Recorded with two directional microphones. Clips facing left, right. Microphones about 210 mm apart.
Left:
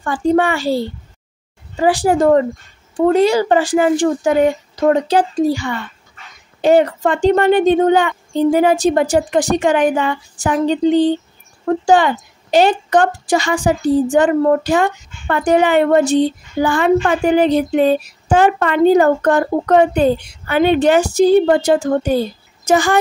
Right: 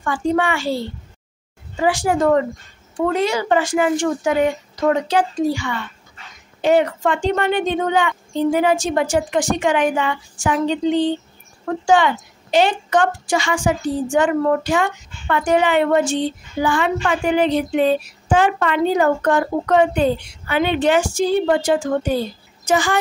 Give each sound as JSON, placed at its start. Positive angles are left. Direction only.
{"t": 0.0, "sound": "a woman's voice", "side_deg": 35}
{"t": 1.8, "sound": "a woman's voice", "side_deg": 35}